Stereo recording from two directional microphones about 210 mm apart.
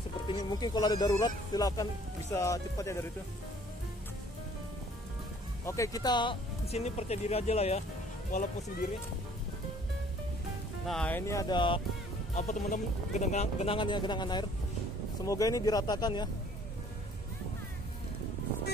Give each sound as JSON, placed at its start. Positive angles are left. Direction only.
{"t": 0.3, "sound": "speech", "side_deg": 20}
{"t": 5.7, "sound": "speech", "side_deg": 15}
{"t": 10.9, "sound": "speech", "side_deg": 5}
{"t": 12.4, "sound": "speech", "side_deg": 35}